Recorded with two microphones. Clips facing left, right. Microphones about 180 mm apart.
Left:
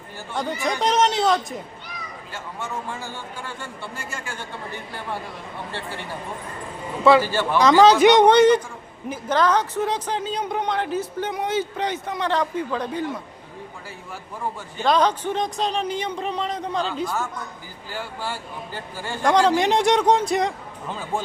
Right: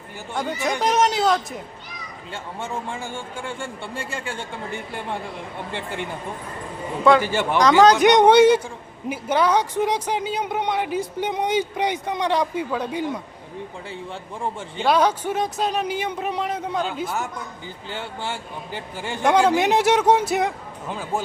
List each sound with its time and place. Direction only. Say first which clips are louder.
0.8 s a man's voice: even; 5° right (ahead or behind)
2.3 s a man's voice: right 2 dB; 30° right (ahead or behind)
7.2 s a man's voice: even; 20° right (ahead or behind)
7.6 s a man's voice: left 1 dB; centre (ahead or behind)
14.8 s speech: right 1 dB; 10° right (ahead or behind)
17.9 s a man's voice: even; 20° right (ahead or behind)
19.2 s a man's voice: even; 5° right (ahead or behind)